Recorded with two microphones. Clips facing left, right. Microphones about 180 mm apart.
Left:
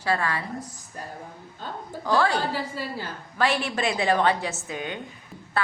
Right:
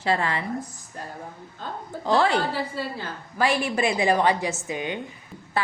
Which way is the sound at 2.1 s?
25° right (ahead or behind).